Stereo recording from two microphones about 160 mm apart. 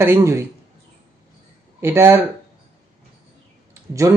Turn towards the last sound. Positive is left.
turn(degrees=-20)  # may be behind; listen again after turning